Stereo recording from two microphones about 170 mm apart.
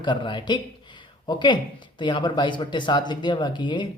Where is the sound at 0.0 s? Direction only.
30° left (ahead or behind).